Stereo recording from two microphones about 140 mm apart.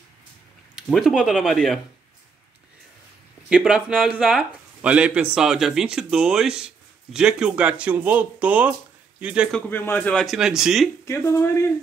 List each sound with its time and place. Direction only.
0.7 s speech: centre (ahead or behind)
3.4 s speech: 5° right (ahead or behind)
9.5 s a man's voice: 10° left (ahead or behind)
10.3 s speech: 5° right (ahead or behind)
11.1 s speech: 20° left (ahead or behind)